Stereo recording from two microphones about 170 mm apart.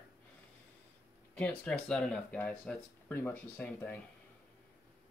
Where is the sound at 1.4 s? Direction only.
5° left (ahead or behind).